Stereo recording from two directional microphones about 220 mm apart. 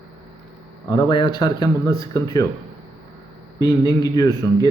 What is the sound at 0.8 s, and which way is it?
Speech, 20° left (ahead or behind).